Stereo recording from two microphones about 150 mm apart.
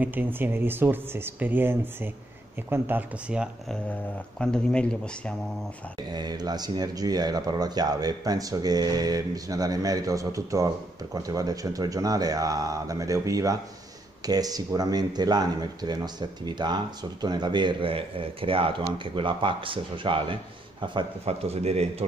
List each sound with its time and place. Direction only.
0.0 s speech: 10° right (ahead or behind)
4.4 s speech: 5° left (ahead or behind)
6.0 s a man's voice: 30° right (ahead or behind); by 22.0 s 45° right (ahead or behind)